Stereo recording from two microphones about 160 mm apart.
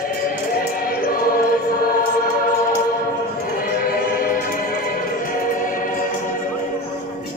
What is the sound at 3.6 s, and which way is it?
Music, 65° left (ahead or behind).